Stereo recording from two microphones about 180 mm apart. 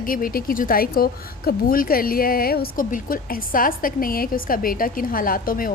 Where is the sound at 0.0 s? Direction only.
50° left (ahead or behind).